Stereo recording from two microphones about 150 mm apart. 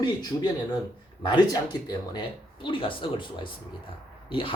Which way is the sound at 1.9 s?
30° left (ahead or behind).